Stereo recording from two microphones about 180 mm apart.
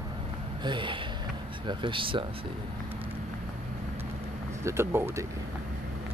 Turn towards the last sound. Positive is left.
turn(degrees=-15)  # may be behind; listen again after turning